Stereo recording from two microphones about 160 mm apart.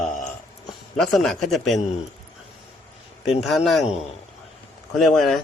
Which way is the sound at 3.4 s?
Centre (ahead or behind).